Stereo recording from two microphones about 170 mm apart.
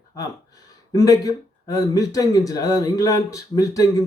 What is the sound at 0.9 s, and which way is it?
Speech, 20° left (ahead or behind).